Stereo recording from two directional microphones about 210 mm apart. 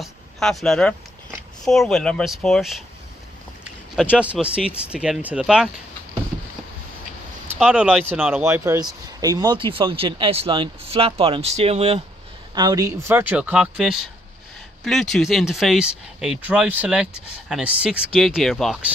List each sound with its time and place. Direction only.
0.0 s speech: centre (ahead or behind)
3.9 s speech: 5° right (ahead or behind)
7.4 s a man's voice: 5° right (ahead or behind); by 12.0 s 30° right (ahead or behind)
12.5 s speech: 20° right (ahead or behind); by 18.9 s centre (ahead or behind)